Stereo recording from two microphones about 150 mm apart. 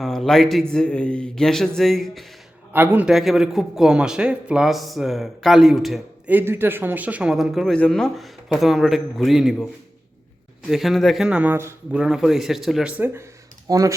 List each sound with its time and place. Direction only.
0.0 s a man's voice: centre (ahead or behind)
2.7 s a man's voice: 15° right (ahead or behind)
6.3 s a man's voice: 15° right (ahead or behind)
10.7 s a man's voice: centre (ahead or behind)
13.7 s speech: 25° right (ahead or behind)